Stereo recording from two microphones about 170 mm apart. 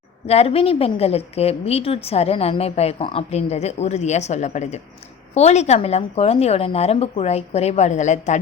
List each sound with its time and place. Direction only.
0.3 s a woman's voice: 35° left (ahead or behind)